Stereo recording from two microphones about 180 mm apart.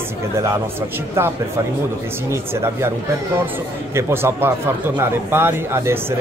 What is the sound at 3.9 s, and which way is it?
Speech, 15° right (ahead or behind).